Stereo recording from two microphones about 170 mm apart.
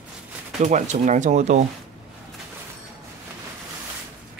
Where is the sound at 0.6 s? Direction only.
45° right (ahead or behind).